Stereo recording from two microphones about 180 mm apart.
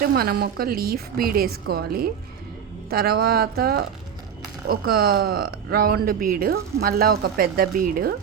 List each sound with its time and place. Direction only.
0.0 s speech: 60° right (ahead or behind)